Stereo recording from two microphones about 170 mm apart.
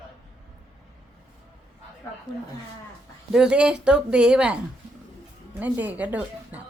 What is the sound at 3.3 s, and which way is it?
Speech, 5° right (ahead or behind).